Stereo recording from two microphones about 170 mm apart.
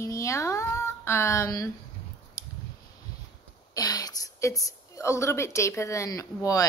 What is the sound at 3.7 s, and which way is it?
A woman's voice, 20° left (ahead or behind).